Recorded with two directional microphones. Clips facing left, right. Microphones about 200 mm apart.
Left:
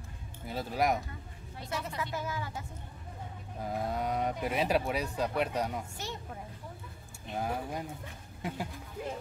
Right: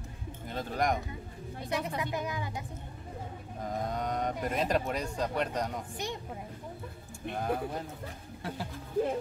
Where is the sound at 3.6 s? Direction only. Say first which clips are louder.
Even; 5° left (ahead or behind).